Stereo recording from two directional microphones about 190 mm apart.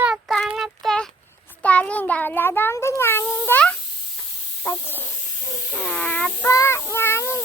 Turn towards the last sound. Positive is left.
turn(degrees=15)  # may be behind; listen again after turning